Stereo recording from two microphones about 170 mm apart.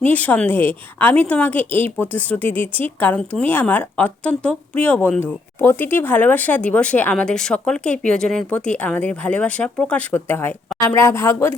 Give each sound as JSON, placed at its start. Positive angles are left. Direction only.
{"t": 0.0, "sound": "a woman's voice", "side_deg": 10}